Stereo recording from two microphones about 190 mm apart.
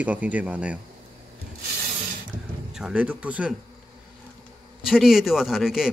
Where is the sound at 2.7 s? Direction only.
5° right (ahead or behind).